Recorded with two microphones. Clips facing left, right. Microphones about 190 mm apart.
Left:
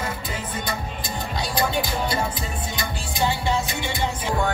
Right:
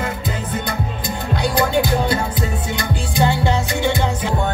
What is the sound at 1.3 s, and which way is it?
Music, 60° right (ahead or behind).